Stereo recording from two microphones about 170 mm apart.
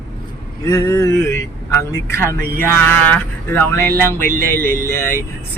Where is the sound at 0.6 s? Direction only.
20° left (ahead or behind).